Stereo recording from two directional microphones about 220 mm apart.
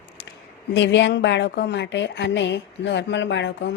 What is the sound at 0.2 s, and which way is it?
A woman's voice, 55° left (ahead or behind).